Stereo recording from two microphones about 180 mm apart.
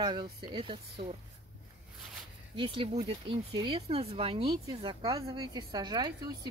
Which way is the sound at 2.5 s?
30° right (ahead or behind).